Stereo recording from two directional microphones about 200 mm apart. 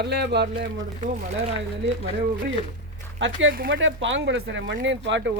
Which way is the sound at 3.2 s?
65° right (ahead or behind).